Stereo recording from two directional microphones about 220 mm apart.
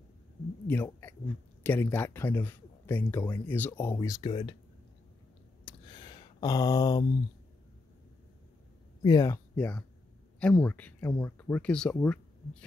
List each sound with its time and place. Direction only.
0.7 s speech: 10° left (ahead or behind)
5.7 s a sound: 20° left (ahead or behind)
9.0 s speech: 15° left (ahead or behind)